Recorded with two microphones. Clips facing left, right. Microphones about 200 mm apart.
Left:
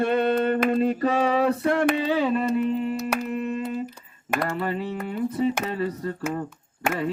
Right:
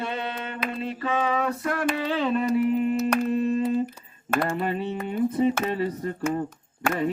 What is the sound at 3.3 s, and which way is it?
Humming, 30° right (ahead or behind).